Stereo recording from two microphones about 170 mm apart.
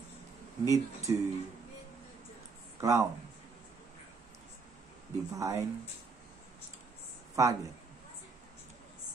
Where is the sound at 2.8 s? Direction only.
20° right (ahead or behind).